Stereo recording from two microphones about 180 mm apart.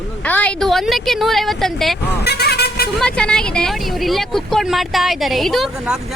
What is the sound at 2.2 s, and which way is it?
Vehicle, 65° left (ahead or behind).